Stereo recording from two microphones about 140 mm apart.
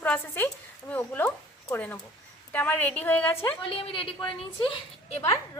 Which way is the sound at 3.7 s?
40° left (ahead or behind).